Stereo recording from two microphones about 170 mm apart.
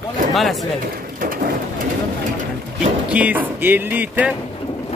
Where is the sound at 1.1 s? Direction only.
55° right (ahead or behind).